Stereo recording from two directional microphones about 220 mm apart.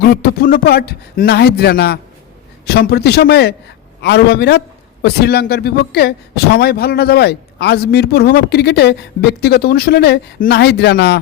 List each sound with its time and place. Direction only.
0.0 s speech: 45° left (ahead or behind)